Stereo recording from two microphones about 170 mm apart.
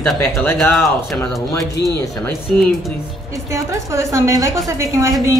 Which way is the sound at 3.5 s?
15° right (ahead or behind).